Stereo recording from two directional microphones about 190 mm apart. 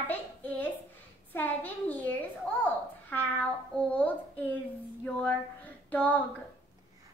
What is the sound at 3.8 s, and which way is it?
Speech, 5° left (ahead or behind).